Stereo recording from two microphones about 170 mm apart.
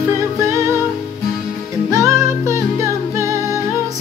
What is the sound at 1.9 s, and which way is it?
Music, 15° right (ahead or behind).